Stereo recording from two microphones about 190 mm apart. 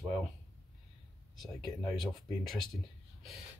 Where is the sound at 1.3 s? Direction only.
Centre (ahead or behind).